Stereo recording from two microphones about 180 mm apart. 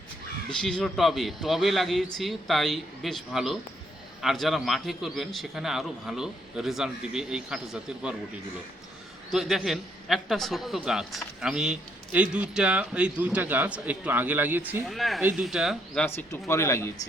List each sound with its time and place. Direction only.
0.6 s a man's voice: 5° left (ahead or behind)
9.3 s a man's voice: centre (ahead or behind)
16.0 s speech: 10° left (ahead or behind)